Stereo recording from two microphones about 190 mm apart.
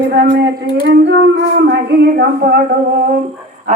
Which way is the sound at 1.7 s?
55° right (ahead or behind).